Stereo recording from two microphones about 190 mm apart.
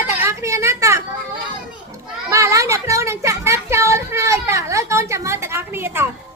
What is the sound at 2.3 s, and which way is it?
Speech, 15° right (ahead or behind).